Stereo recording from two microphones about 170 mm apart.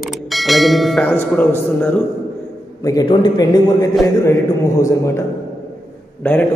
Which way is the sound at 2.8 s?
25° left (ahead or behind).